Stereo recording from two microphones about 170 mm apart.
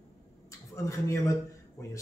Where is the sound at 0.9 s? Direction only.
15° left (ahead or behind).